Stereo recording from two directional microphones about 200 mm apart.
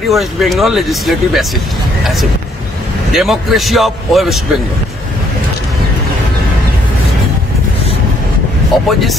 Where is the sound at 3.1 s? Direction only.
Centre (ahead or behind).